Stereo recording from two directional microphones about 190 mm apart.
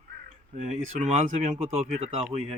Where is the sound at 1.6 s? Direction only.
30° right (ahead or behind).